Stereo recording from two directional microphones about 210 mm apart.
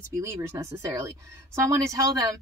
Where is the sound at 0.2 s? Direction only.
10° right (ahead or behind).